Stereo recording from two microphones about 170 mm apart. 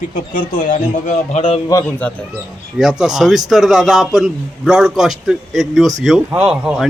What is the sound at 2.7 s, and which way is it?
A man's voice, 5° right (ahead or behind).